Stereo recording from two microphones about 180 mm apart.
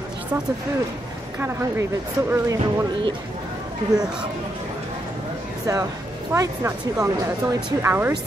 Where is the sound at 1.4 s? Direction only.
15° right (ahead or behind).